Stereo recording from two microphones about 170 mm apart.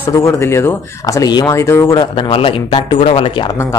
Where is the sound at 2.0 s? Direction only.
30° left (ahead or behind).